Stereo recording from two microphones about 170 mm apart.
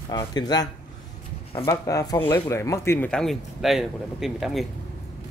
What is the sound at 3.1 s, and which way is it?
Speech, 5° left (ahead or behind).